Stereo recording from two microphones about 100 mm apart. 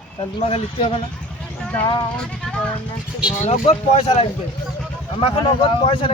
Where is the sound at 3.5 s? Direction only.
90° left.